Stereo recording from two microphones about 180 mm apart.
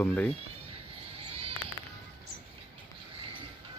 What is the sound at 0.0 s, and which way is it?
Speech, 10° left (ahead or behind).